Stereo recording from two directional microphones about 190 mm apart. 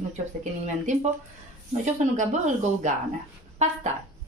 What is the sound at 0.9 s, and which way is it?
Speech, 40° right (ahead or behind).